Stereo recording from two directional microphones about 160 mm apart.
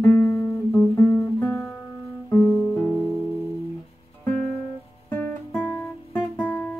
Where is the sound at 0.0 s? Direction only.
15° left (ahead or behind).